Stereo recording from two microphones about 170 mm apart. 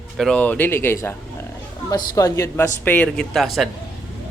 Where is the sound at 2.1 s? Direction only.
20° left (ahead or behind); by 3.7 s centre (ahead or behind).